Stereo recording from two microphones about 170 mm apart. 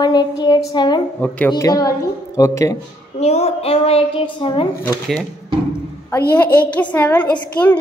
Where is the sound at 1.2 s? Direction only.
10° left (ahead or behind).